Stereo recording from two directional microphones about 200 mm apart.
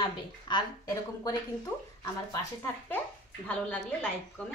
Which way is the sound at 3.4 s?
5° left (ahead or behind).